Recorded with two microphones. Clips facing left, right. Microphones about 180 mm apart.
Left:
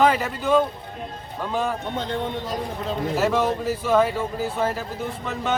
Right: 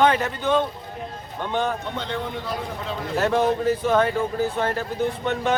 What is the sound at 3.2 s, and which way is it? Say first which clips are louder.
Speech: right 2 dB; 5° left (ahead or behind).